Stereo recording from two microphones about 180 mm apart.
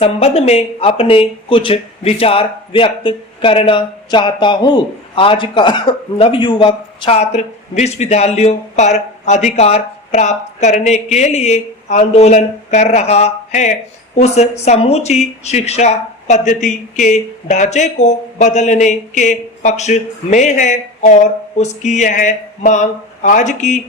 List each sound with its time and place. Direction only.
0.0 s speech: 35° left (ahead or behind)